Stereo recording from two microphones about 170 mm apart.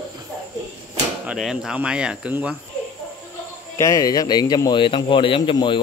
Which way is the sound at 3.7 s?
20° left (ahead or behind).